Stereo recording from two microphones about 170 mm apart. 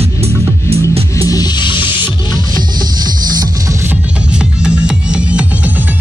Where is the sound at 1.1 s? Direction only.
20° left (ahead or behind).